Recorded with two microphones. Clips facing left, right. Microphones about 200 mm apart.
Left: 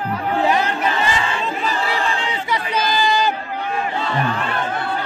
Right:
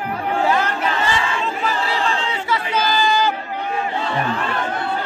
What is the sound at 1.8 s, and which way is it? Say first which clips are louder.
Chatter: even; 15° left (ahead or behind).